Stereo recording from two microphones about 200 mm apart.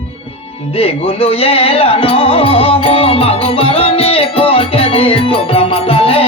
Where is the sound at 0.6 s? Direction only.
30° left (ahead or behind).